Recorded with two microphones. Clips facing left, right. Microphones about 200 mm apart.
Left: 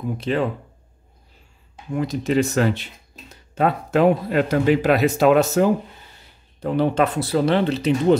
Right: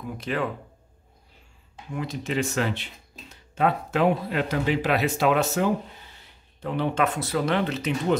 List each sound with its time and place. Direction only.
0.0 s speech: 25° left (ahead or behind)
2.0 s speech: 40° left (ahead or behind)